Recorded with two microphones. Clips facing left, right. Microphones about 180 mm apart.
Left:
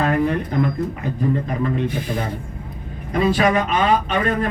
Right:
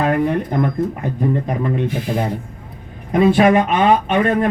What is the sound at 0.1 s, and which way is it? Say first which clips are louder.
Speech: right 2 dB; 55° right (ahead or behind).